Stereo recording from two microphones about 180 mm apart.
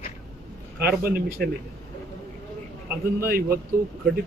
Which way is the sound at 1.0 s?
55° right (ahead or behind).